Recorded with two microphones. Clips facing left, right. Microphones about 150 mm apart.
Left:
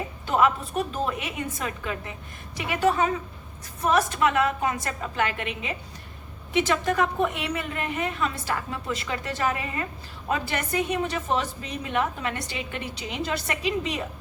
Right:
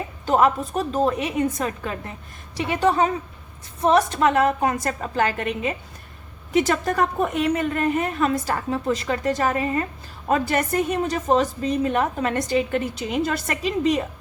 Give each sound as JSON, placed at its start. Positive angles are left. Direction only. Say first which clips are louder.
{"t": 0.3, "sound": "a woman's voice", "louder": "right 4 dB", "side_deg": -40}